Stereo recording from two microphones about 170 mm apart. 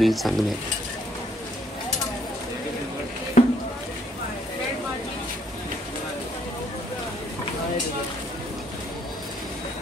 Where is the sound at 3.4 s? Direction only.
50° left (ahead or behind).